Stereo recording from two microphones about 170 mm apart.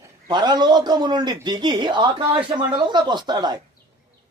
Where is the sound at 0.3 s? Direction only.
25° right (ahead or behind).